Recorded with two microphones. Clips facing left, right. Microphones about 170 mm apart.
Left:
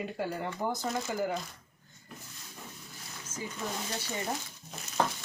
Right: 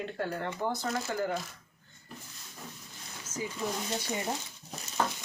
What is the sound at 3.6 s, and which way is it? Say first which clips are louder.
Speech: right 3 dB; 15° right (ahead or behind).